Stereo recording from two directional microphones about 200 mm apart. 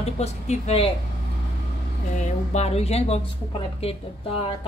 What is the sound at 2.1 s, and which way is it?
A woman's voice, 35° left (ahead or behind).